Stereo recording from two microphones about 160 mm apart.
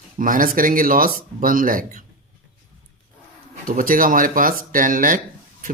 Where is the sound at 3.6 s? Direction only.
60° right (ahead or behind).